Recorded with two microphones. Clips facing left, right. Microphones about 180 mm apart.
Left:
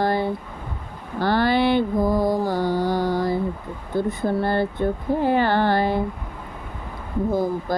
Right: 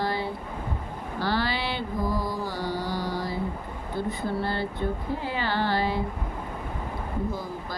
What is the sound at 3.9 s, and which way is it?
Speech, 50° left (ahead or behind).